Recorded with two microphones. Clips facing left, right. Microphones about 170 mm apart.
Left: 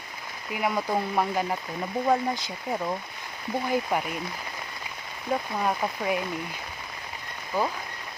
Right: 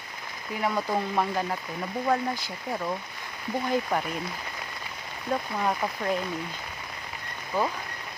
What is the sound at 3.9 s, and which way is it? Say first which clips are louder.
Speech: left 1 dB; 10° left (ahead or behind).